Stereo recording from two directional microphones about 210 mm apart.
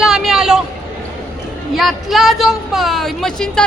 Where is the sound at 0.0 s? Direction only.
Centre (ahead or behind).